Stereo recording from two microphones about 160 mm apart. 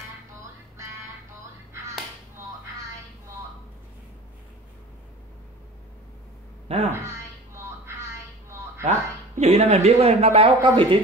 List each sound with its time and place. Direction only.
1.7 s music: 20° right (ahead or behind)
6.9 s a sound: 15° right (ahead or behind)
8.8 s speech: 45° right (ahead or behind)